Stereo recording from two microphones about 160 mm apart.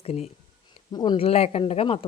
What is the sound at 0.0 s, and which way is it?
A woman's voice, 40° left (ahead or behind).